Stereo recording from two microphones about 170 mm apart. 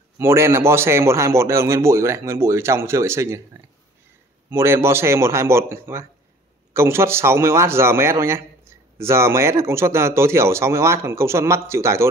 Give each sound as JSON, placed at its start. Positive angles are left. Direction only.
{"t": 0.2, "sound": "a man's voice", "side_deg": -15}
{"t": 4.5, "sound": "a man's voice", "side_deg": -15}